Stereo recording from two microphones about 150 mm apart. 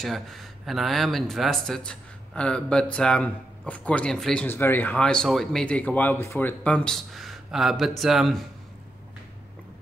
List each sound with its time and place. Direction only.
0.0 s speech: centre (ahead or behind)